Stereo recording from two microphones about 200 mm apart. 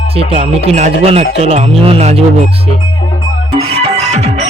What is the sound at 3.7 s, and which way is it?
Music, 30° right (ahead or behind).